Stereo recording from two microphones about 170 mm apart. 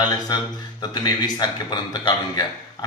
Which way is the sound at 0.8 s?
25° left (ahead or behind).